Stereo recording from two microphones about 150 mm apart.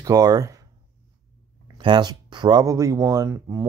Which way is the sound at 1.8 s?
30° right (ahead or behind).